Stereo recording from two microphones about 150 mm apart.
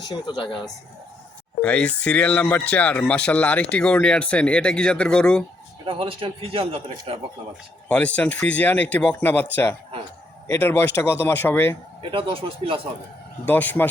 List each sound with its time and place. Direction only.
0.1 s speech: 30° left (ahead or behind)
1.6 s speech: 10° left (ahead or behind)
5.8 s a man's voice: 40° right (ahead or behind)
7.9 s speech: 10° left (ahead or behind)
12.1 s a man's voice: 40° right (ahead or behind)
13.4 s speech: 10° left (ahead or behind)